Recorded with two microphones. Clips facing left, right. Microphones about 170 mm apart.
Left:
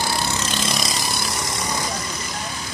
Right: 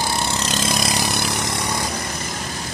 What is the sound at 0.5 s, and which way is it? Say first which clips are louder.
Vehicle: right 3 dB; 50° right (ahead or behind).